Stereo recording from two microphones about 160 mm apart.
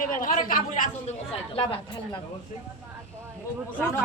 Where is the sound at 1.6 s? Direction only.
35° left (ahead or behind).